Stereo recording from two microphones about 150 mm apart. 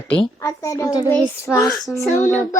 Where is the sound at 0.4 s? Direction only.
20° left (ahead or behind).